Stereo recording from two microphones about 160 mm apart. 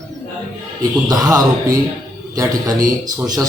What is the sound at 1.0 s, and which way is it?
Speech, 25° right (ahead or behind).